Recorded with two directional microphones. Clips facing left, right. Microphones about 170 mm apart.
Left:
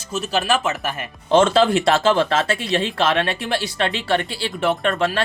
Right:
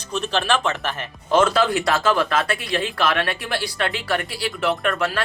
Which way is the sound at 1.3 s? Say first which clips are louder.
Left 3 dB; 25° left (ahead or behind).